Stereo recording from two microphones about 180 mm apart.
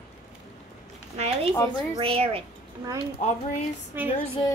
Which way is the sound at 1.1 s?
35° right (ahead or behind).